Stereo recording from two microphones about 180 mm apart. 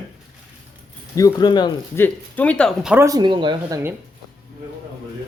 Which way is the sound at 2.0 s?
10° left (ahead or behind).